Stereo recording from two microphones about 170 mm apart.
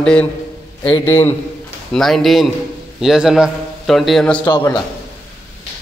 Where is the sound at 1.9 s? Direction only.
Centre (ahead or behind).